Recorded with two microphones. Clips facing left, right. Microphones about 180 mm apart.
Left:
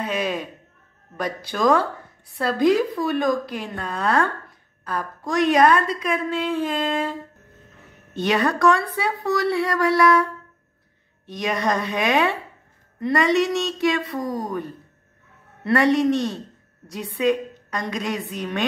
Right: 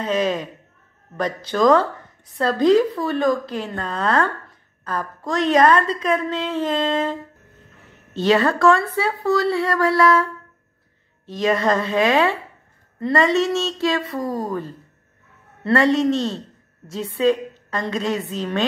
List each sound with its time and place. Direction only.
0.0 s a woman's voice: 10° left (ahead or behind)
8.2 s a woman's voice: 15° left (ahead or behind)
11.2 s a woman's voice: 15° left (ahead or behind)
15.6 s a woman's voice: 15° left (ahead or behind)